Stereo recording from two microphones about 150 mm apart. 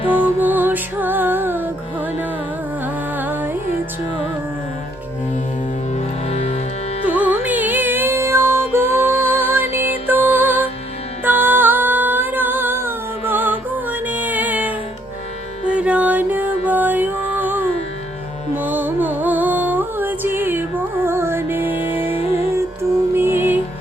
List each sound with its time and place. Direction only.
0.1 s music: 10° right (ahead or behind)
5.9 s music: 45° left (ahead or behind)
7.0 s music: 10° right (ahead or behind)
11.2 s humming: 10° right (ahead or behind)
15.7 s music: 10° right (ahead or behind)